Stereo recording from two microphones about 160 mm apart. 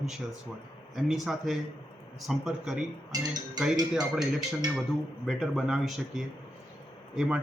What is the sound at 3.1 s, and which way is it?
Speech, 25° right (ahead or behind).